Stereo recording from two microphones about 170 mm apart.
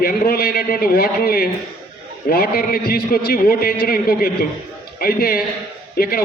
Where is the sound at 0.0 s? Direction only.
60° left (ahead or behind).